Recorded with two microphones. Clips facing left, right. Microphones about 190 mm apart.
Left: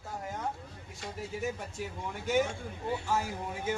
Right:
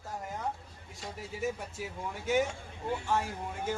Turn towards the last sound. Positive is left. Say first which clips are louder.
# left 1 dB
turn(degrees=0)  # may be behind; listen again after turning